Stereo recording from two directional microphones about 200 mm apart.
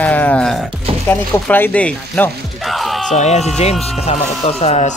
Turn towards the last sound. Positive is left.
turn(degrees=35)  # may be behind; listen again after turning